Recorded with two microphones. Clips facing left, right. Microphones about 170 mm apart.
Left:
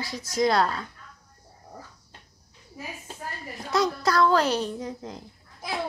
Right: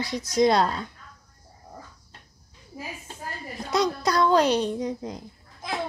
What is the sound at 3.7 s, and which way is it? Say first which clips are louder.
A child's voice: even; 20° right (ahead or behind).